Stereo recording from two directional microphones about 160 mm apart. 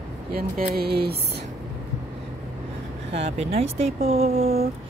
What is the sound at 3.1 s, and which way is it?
Speech, 40° right (ahead or behind).